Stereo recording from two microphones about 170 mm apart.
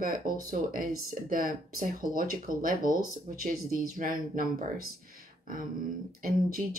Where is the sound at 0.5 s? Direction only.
55° right (ahead or behind).